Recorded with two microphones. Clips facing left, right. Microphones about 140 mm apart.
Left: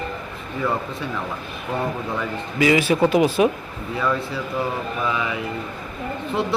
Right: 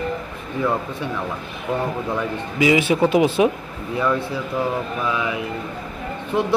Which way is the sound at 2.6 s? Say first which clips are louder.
Even; 20° right (ahead or behind).